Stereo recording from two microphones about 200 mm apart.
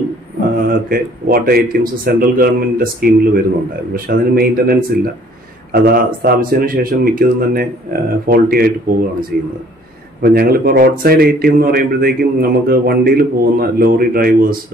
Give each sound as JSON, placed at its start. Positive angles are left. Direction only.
{"t": 0.7, "sound": "speech", "side_deg": -45}